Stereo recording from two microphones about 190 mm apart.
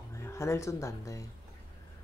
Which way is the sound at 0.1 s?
15° left (ahead or behind).